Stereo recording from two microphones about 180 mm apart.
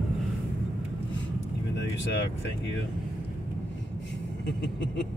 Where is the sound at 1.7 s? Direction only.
80° left.